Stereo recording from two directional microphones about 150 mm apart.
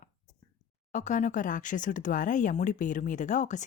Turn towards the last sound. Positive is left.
turn(degrees=55)  # may be behind; listen again after turning